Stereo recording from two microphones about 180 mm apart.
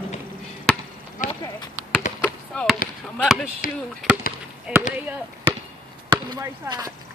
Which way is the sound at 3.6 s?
50° left (ahead or behind).